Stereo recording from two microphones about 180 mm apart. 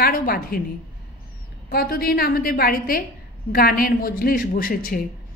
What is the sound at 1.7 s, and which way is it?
A woman's voice, 60° left (ahead or behind).